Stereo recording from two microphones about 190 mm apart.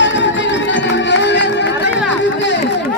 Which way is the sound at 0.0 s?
70° left (ahead or behind).